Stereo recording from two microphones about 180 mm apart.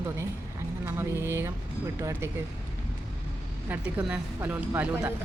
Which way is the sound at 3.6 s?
10° right (ahead or behind).